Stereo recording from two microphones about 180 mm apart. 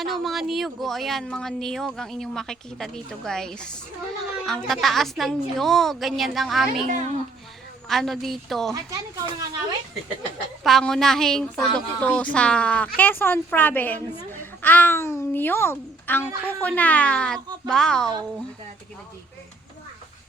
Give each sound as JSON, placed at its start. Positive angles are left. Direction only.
{"t": 0.0, "sound": "speech", "side_deg": 0}
{"t": 6.8, "sound": "speech", "side_deg": -45}
{"t": 7.9, "sound": "speech", "side_deg": 0}
{"t": 8.7, "sound": "speech", "side_deg": -20}
{"t": 10.6, "sound": "a child's voice", "side_deg": 0}